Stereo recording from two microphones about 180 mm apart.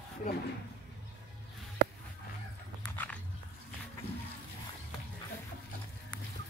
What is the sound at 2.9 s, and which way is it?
Dog, 10° left (ahead or behind).